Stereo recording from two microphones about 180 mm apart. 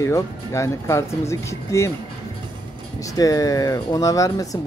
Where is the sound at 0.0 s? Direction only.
15° left (ahead or behind).